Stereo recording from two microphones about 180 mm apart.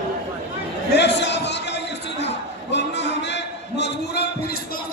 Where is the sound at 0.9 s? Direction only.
70° left (ahead or behind).